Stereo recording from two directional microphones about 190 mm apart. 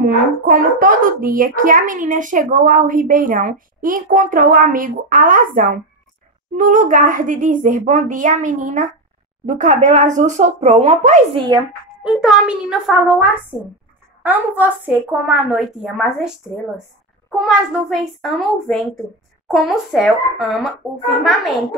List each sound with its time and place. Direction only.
0.0 s a child's voice: 45° right (ahead or behind)
12.0 s a child's voice: 5° right (ahead or behind)
17.5 s a child's voice: centre (ahead or behind)